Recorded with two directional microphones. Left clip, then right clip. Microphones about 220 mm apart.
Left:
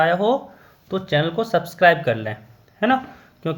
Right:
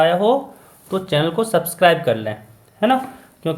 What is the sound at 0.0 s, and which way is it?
Speech, 30° left (ahead or behind).